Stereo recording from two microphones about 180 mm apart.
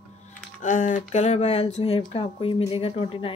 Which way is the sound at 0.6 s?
45° left (ahead or behind).